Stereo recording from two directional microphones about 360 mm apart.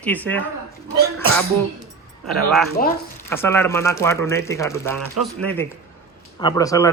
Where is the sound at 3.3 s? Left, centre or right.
Centre.